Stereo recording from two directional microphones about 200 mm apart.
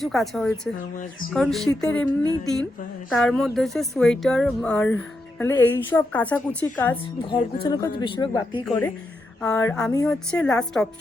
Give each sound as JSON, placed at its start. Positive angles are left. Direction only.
{"t": 0.0, "sound": "speech", "side_deg": 0}
{"t": 3.1, "sound": "a woman's voice", "side_deg": 5}
{"t": 7.3, "sound": "speech", "side_deg": 20}
{"t": 8.6, "sound": "a woman's voice", "side_deg": 10}